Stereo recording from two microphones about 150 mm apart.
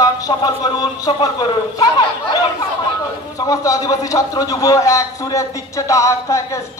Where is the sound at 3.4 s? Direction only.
25° left (ahead or behind).